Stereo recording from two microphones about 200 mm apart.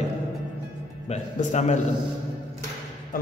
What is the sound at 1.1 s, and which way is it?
Speech, 35° left (ahead or behind).